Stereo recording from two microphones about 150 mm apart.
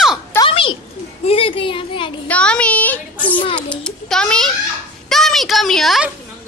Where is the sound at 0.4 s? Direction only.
35° left (ahead or behind).